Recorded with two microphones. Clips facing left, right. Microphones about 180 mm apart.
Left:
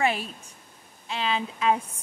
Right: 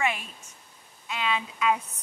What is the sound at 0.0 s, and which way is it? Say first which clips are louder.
Speech: left 4 dB; 35° left (ahead or behind).